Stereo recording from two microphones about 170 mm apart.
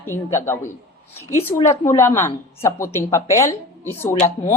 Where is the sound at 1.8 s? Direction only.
15° left (ahead or behind).